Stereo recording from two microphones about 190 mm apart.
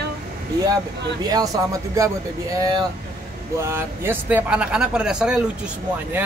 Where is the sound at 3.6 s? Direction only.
15° right (ahead or behind).